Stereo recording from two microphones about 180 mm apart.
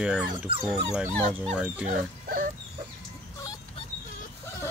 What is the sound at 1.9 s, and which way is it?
Speech, 50° right (ahead or behind).